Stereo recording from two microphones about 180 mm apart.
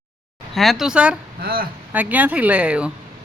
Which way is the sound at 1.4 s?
55° right (ahead or behind).